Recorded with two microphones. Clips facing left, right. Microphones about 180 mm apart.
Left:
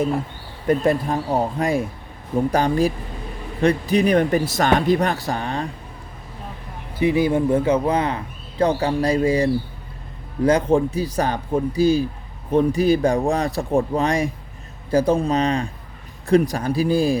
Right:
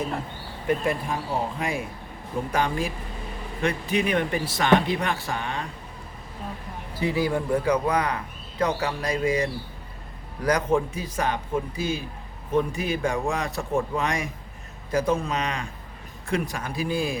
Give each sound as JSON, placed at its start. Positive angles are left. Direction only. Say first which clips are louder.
{"t": 0.9, "sound": "speech", "louder": "left 7 dB", "side_deg": 35}
{"t": 6.9, "sound": "a man's voice", "louder": "left 6 dB", "side_deg": 20}